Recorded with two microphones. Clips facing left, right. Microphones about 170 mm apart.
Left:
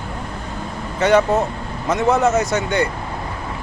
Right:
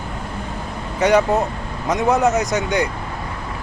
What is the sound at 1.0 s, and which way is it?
Speech, 15° right (ahead or behind).